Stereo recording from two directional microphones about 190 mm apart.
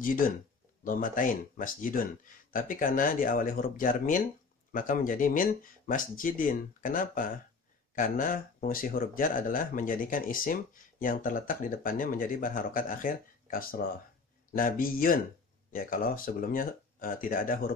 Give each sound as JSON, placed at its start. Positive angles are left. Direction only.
{"t": 0.8, "sound": "speech", "side_deg": 45}